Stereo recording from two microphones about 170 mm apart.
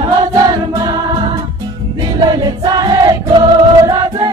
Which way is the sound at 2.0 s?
25° right (ahead or behind).